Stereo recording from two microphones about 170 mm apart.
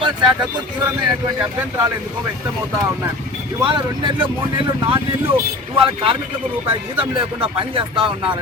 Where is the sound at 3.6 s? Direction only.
25° right (ahead or behind).